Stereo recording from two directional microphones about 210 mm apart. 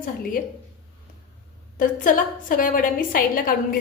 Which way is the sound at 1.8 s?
40° left (ahead or behind).